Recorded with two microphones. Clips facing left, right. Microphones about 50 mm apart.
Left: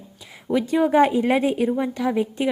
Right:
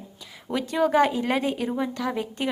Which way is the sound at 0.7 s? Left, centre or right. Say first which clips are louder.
Left 3 dB; centre.